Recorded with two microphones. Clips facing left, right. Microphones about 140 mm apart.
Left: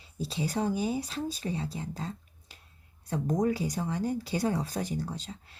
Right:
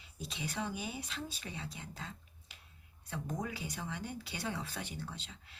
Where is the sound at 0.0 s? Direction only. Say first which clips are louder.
Left 10 dB; 35° left (ahead or behind).